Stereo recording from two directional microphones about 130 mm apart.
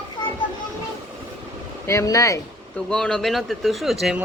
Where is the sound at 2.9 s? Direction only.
5° left (ahead or behind).